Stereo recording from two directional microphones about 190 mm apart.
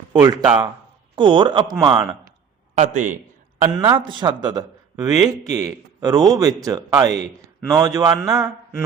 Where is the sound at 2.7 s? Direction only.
40° right (ahead or behind).